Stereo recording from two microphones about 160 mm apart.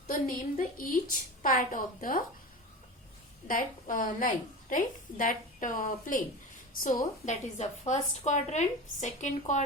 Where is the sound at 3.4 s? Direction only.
55° left (ahead or behind).